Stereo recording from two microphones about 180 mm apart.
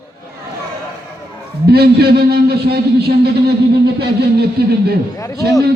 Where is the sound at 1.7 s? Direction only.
60° right (ahead or behind).